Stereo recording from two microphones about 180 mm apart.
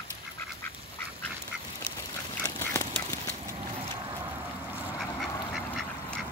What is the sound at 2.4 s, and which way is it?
Duck, 15° left (ahead or behind).